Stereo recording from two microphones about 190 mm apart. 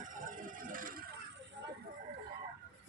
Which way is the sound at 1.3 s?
70° right (ahead or behind).